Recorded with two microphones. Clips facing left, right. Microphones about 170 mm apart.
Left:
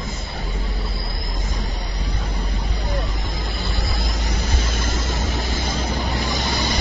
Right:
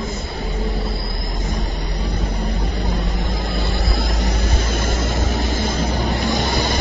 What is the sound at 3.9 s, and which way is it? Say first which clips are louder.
Vehicle: right 5 dB; 60° right (ahead or behind).